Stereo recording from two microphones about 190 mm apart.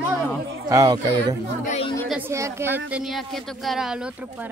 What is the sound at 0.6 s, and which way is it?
Speech, 20° right (ahead or behind).